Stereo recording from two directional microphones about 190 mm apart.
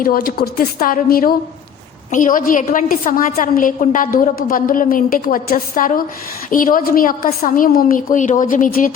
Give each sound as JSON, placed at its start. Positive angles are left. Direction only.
{"t": 0.0, "sound": "a woman's voice", "side_deg": 50}